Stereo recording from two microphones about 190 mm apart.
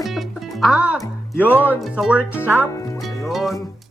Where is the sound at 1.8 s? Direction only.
Centre (ahead or behind).